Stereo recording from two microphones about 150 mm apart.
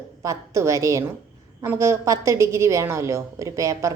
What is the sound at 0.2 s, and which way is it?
A woman's voice, 20° right (ahead or behind).